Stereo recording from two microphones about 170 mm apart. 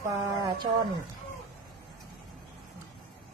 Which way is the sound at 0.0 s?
20° right (ahead or behind).